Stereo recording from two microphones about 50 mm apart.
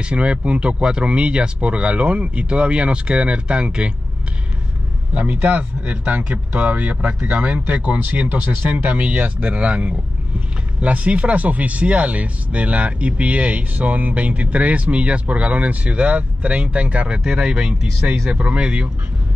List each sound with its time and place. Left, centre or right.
0.0 s speech: right
5.1 s speech: right
17.2 s speech: centre